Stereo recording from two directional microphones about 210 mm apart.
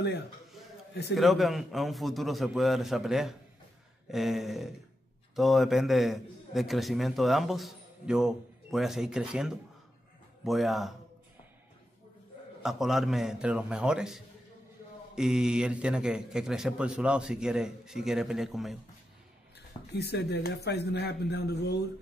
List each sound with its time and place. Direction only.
1.1 s a man's voice: centre (ahead or behind)
12.6 s a man's voice: centre (ahead or behind)
19.9 s a man's voice: 50° left (ahead or behind)